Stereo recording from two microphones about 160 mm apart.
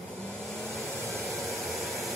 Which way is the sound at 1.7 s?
Centre (ahead or behind).